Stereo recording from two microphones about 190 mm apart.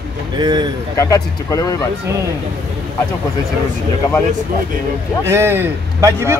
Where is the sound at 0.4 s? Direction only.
20° right (ahead or behind).